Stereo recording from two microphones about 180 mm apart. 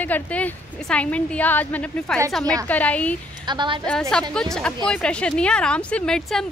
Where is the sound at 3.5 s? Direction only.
25° right (ahead or behind).